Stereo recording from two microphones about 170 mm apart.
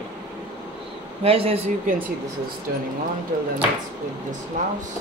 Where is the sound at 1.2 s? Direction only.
35° right (ahead or behind).